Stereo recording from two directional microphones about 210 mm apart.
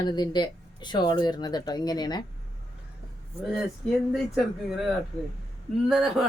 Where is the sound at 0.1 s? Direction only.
20° left (ahead or behind).